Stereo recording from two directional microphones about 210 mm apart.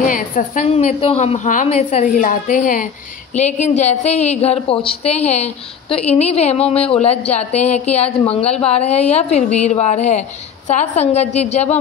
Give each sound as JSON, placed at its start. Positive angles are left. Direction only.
{"t": 0.0, "sound": "a woman's voice", "side_deg": 40}